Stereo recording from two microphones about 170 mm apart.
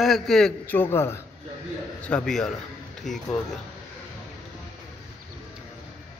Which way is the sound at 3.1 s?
45° left (ahead or behind).